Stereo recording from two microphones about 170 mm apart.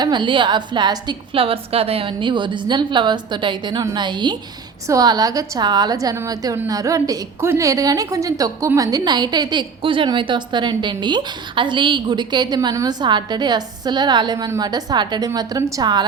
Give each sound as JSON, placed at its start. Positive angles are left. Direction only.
{"t": 0.0, "sound": "a woman's voice", "side_deg": -25}